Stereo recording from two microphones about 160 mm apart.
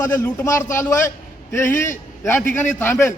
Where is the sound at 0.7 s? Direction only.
15° left (ahead or behind).